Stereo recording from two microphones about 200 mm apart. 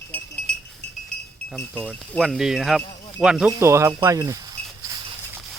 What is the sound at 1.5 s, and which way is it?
Speech, 5° left (ahead or behind).